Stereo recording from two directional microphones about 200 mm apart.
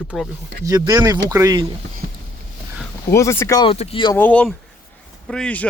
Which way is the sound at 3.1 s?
15° left (ahead or behind).